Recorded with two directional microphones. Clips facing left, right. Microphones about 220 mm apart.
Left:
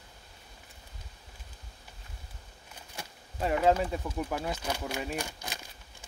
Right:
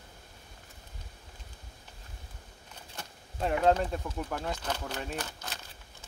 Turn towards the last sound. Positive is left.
turn(degrees=10)  # may be behind; listen again after turning